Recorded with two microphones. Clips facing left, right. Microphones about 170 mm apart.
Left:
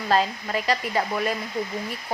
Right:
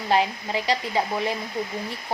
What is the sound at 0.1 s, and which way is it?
Speech, 20° right (ahead or behind).